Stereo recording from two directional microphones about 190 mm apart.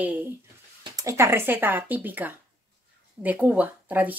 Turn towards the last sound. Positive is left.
turn(degrees=-10)  # may be behind; listen again after turning